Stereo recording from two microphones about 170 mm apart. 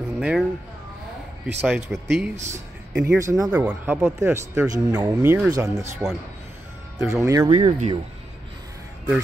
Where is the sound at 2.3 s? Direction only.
45° right (ahead or behind).